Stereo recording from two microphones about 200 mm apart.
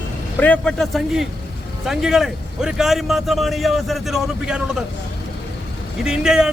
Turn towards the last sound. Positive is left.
turn(degrees=-5)  # may be behind; listen again after turning